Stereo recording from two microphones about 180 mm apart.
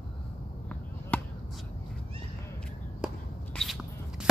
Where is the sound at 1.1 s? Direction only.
10° left (ahead or behind).